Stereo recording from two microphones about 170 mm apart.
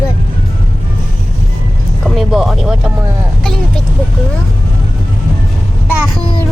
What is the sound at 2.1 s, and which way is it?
Music, centre (ahead or behind).